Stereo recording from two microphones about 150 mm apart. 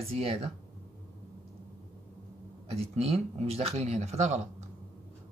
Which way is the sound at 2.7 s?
40° right (ahead or behind).